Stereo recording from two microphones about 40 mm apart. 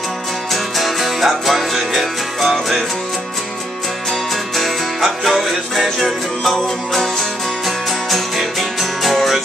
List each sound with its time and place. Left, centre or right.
0.5 s music: centre
4.6 s music: centre